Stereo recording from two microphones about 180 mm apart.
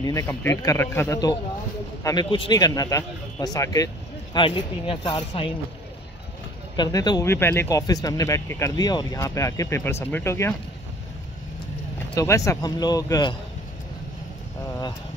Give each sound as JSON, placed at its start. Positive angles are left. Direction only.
{"t": 0.0, "sound": "a man's voice", "side_deg": 15}
{"t": 6.8, "sound": "speech", "side_deg": 20}
{"t": 12.2, "sound": "a man's voice", "side_deg": 15}